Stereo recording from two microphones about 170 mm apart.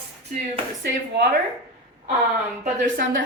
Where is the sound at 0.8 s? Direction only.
80° right.